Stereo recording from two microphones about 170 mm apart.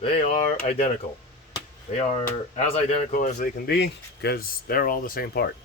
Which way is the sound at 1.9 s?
45° left (ahead or behind).